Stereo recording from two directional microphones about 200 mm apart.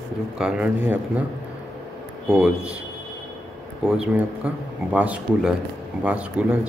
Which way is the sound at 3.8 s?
5° right (ahead or behind).